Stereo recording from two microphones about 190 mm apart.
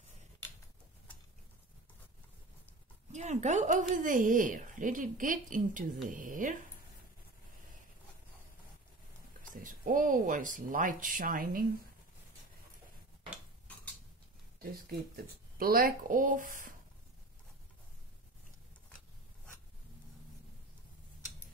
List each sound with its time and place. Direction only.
3.1 s speech: 40° right (ahead or behind)
9.6 s speech: 45° right (ahead or behind)
14.6 s speech: 50° right (ahead or behind)